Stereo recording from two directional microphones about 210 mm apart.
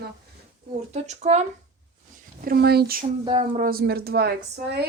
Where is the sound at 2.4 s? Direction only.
45° right (ahead or behind).